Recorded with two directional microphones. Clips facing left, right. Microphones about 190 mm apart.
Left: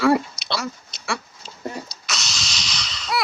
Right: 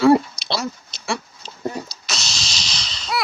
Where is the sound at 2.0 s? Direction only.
30° right (ahead or behind).